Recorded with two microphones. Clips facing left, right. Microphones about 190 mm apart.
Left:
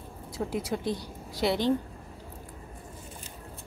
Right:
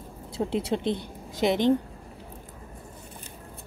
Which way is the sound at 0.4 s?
25° right (ahead or behind).